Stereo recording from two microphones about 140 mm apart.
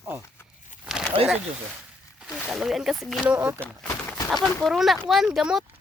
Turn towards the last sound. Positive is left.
turn(degrees=-5)  # may be behind; listen again after turning